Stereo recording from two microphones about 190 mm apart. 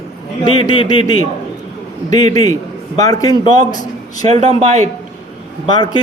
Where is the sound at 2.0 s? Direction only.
20° left (ahead or behind).